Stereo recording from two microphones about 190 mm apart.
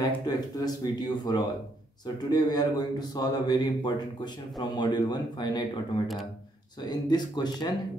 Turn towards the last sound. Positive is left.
turn(degrees=20)  # may be behind; listen again after turning